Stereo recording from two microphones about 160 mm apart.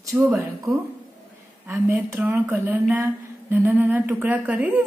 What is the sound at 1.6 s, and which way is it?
A woman's voice, 10° right (ahead or behind).